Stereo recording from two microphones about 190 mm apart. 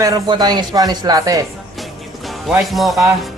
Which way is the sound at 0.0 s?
20° right (ahead or behind).